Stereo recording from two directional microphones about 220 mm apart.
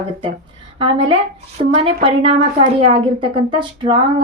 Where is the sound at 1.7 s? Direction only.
25° right (ahead or behind).